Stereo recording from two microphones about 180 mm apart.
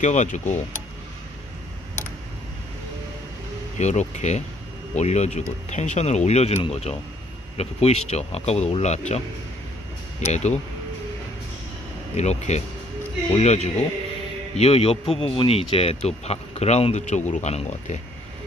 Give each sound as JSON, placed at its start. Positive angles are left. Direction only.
{"t": 0.0, "sound": "speech", "side_deg": 40}
{"t": 3.7, "sound": "speech", "side_deg": 40}
{"t": 10.2, "sound": "speech", "side_deg": 40}
{"t": 12.2, "sound": "speech", "side_deg": 40}